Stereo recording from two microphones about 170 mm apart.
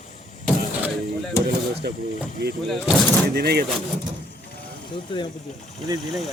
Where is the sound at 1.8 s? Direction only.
75° right (ahead or behind).